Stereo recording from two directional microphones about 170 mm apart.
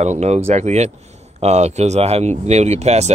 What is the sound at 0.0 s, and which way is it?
Speech, 40° right (ahead or behind).